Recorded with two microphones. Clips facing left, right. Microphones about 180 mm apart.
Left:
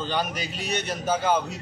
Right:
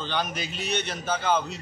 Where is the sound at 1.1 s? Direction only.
10° left (ahead or behind).